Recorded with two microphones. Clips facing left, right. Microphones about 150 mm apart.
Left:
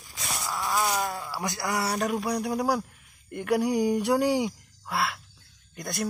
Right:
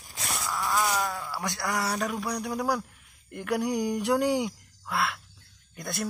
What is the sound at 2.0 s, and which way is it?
Speech, 25° left (ahead or behind).